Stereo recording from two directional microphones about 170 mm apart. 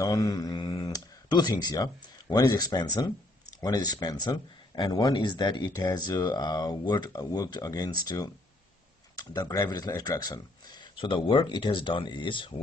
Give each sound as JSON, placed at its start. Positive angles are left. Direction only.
{"t": 0.0, "sound": "speech", "side_deg": 20}
{"t": 9.1, "sound": "speech", "side_deg": 25}